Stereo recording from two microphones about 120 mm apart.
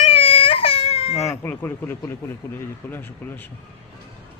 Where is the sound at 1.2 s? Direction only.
20° left (ahead or behind).